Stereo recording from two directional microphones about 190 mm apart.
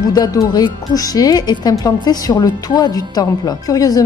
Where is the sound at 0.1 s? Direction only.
20° left (ahead or behind).